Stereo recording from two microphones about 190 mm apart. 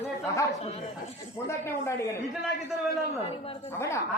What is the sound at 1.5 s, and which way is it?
Speech, 15° left (ahead or behind).